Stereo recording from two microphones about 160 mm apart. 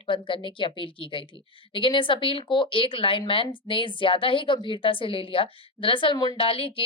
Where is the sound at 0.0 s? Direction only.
30° left (ahead or behind).